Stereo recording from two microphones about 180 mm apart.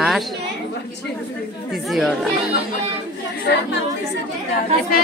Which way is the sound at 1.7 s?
Centre (ahead or behind).